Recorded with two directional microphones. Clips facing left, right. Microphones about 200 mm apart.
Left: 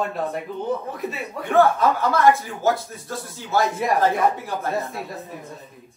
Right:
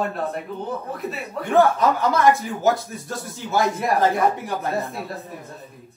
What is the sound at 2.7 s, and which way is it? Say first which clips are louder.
Speech: right 1 dB; centre (ahead or behind).